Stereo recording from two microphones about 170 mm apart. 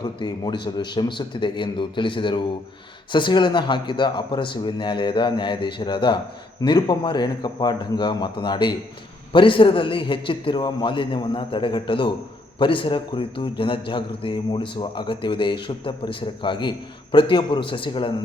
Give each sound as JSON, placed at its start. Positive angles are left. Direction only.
{"t": 0.0, "sound": "a man's voice", "side_deg": 25}